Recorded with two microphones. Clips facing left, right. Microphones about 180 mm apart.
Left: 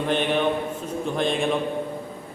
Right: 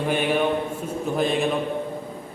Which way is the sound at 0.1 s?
10° right (ahead or behind).